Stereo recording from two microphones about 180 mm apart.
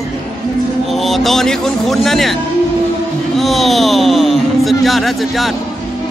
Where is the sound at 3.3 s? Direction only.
Centre (ahead or behind).